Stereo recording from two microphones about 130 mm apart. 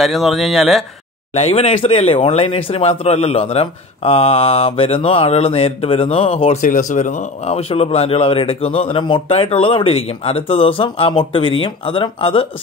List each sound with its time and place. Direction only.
0.0 s speech: centre (ahead or behind)
1.3 s speech: 50° left (ahead or behind)
6.6 s speech: 80° left; by 12.4 s 45° left (ahead or behind)